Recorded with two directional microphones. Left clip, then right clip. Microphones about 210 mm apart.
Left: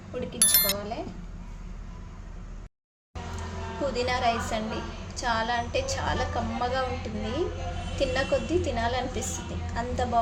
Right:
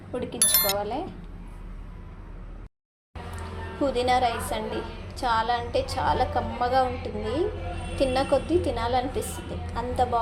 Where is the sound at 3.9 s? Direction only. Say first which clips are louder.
Right 3 dB; 15° right (ahead or behind).